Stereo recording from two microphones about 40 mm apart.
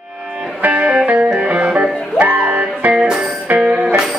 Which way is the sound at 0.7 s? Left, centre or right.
Right.